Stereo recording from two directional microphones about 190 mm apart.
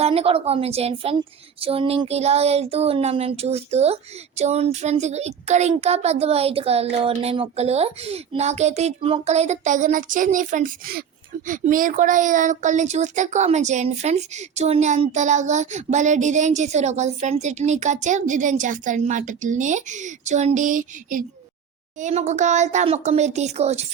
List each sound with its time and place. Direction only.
0.0 s a woman's voice: 30° right (ahead or behind)